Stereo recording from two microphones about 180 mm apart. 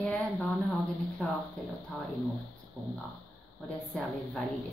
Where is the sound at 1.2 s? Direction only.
Centre (ahead or behind).